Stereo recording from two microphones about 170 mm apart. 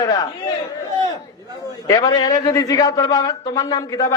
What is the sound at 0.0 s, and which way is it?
Speech, 20° left (ahead or behind).